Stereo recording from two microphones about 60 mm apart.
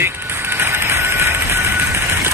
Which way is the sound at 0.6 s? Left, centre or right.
Right.